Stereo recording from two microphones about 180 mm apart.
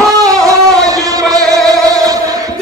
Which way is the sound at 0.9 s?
20° right (ahead or behind).